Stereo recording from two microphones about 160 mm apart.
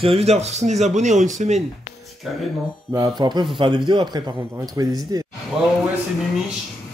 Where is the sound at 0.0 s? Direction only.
40° right (ahead or behind).